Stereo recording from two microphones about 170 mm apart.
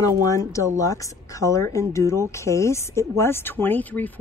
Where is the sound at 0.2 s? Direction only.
20° left (ahead or behind).